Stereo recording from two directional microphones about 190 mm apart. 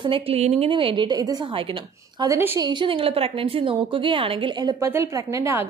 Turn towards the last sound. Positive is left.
turn(degrees=-15)  # may be behind; listen again after turning